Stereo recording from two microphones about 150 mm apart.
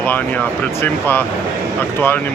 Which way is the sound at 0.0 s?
10° left (ahead or behind).